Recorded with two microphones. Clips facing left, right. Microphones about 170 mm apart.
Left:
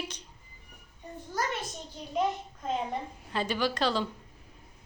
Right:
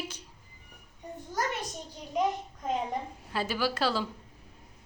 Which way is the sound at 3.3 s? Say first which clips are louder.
Left 1 dB; 5° right (ahead or behind).